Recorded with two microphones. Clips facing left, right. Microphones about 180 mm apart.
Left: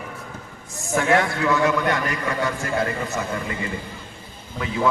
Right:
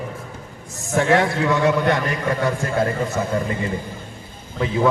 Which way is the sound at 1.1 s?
30° right (ahead or behind).